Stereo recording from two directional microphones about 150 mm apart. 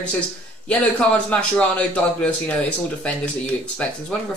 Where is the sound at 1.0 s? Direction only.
5° left (ahead or behind).